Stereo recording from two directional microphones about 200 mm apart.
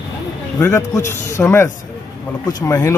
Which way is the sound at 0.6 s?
15° left (ahead or behind).